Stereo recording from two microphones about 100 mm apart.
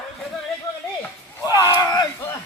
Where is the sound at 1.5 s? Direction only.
35° left (ahead or behind).